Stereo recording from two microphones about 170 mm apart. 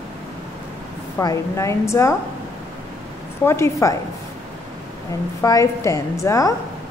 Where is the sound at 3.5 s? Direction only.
15° left (ahead or behind).